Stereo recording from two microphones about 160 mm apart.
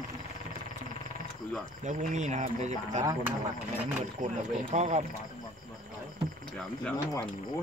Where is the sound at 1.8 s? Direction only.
50° right (ahead or behind).